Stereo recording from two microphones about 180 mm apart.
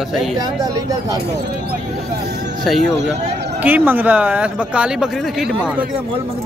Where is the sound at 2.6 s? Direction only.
Centre (ahead or behind).